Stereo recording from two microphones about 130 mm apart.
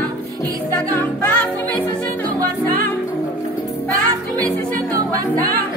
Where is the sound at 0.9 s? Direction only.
15° left (ahead or behind).